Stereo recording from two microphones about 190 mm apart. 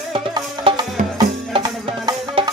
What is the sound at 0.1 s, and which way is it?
Music, 25° right (ahead or behind).